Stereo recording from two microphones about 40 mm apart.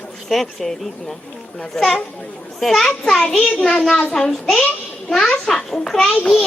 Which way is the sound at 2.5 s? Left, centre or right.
Centre.